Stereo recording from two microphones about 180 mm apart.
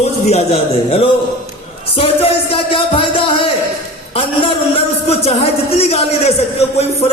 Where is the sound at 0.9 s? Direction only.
30° left (ahead or behind).